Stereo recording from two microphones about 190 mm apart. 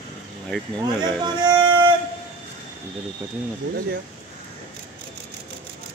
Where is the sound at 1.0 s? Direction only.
20° right (ahead or behind).